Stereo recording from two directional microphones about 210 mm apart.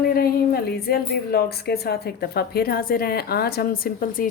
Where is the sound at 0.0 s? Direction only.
45° left (ahead or behind).